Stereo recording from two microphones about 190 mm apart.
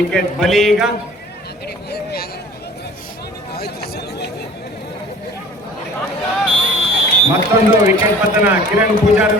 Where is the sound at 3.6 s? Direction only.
55° left (ahead or behind).